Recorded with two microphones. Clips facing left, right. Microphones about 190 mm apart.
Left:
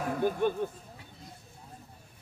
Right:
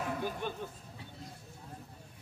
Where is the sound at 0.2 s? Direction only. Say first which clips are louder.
Left 9 dB; 50° left (ahead or behind).